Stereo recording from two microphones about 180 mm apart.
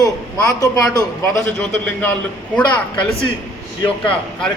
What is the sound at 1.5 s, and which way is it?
Speech, 10° left (ahead or behind).